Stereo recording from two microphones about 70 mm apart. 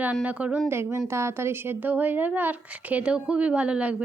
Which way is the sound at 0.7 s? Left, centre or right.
Right.